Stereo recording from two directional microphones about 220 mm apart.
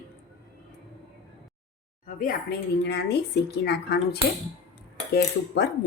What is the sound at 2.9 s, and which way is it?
Speech, 50° left (ahead or behind).